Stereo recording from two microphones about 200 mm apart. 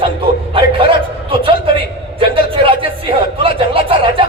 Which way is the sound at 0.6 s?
25° right (ahead or behind).